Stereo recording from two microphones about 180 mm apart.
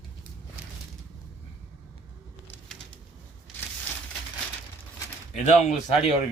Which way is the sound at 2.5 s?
5° left (ahead or behind).